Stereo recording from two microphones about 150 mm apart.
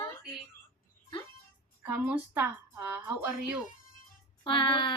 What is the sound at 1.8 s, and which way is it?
Speech, 10° right (ahead or behind).